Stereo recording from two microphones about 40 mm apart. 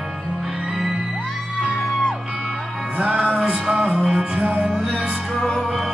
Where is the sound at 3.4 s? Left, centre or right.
Centre.